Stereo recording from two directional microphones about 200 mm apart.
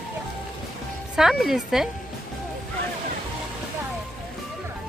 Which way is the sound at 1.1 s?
Centre (ahead or behind).